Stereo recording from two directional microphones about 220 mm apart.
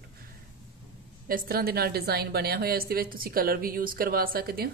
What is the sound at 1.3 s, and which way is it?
A woman's voice, 40° right (ahead or behind).